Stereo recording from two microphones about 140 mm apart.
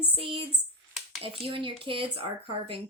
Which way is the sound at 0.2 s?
40° right (ahead or behind).